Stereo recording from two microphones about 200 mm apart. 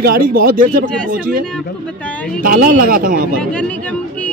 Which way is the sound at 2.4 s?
45° right (ahead or behind).